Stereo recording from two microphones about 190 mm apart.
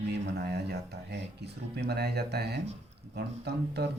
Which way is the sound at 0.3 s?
60° right (ahead or behind).